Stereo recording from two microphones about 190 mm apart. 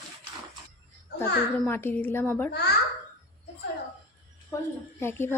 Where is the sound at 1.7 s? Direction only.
10° left (ahead or behind).